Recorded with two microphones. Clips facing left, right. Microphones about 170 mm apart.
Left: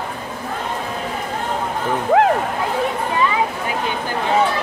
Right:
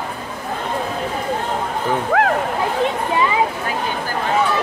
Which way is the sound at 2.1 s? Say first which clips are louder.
Left 4 dB; 20° left (ahead or behind).